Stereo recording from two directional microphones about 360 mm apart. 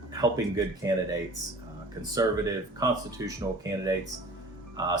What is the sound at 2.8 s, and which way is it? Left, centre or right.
Speech, centre.